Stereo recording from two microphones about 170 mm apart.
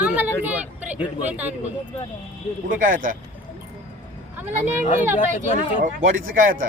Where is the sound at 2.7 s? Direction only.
50° right (ahead or behind).